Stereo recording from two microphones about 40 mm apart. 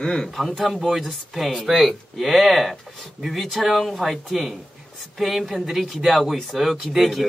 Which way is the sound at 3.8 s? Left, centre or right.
Centre.